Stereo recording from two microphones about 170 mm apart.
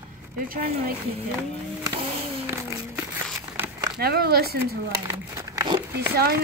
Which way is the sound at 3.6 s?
20° right (ahead or behind).